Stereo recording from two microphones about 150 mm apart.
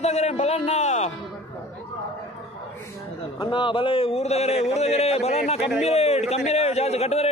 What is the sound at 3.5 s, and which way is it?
A man's voice, 35° left (ahead or behind).